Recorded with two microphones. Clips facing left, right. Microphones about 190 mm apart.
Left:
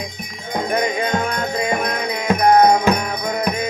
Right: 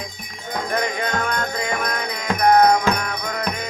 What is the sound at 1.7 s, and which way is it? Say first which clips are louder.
Music: left 4 dB; 25° left (ahead or behind).